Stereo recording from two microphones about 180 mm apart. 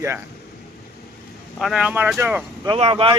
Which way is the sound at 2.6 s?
30° right (ahead or behind).